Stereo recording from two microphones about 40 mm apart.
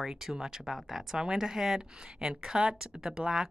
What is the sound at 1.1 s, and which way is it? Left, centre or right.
Speech, centre.